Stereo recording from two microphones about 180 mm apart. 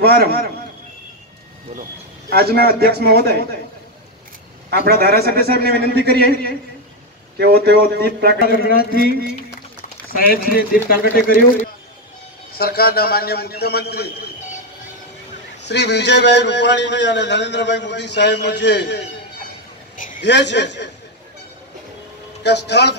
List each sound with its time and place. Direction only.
0.0 s a man's voice: 60° right (ahead or behind)
1.8 s a man's voice: 60° right (ahead or behind)
4.6 s a man's voice: 60° right (ahead or behind)
8.4 s a man's voice: 60° left (ahead or behind)
10.1 s a man's voice: 55° left (ahead or behind)
12.5 s a man's voice: 55° left (ahead or behind)
15.7 s a man's voice: 70° left (ahead or behind)
20.2 s a man's voice: 75° left (ahead or behind)
22.4 s a man's voice: 70° left (ahead or behind)